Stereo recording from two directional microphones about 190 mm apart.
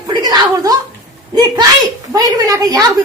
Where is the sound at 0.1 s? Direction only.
20° right (ahead or behind).